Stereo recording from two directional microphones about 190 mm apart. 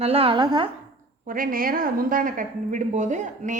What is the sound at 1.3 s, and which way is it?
A woman's voice, 45° right (ahead or behind).